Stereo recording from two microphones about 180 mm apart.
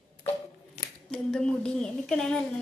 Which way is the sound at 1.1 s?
5° left (ahead or behind).